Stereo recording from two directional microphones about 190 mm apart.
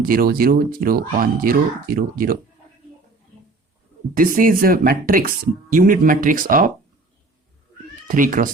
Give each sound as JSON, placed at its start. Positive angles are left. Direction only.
{"t": 0.0, "sound": "speech", "side_deg": -50}
{"t": 4.1, "sound": "speech", "side_deg": -45}
{"t": 8.0, "sound": "speech", "side_deg": -45}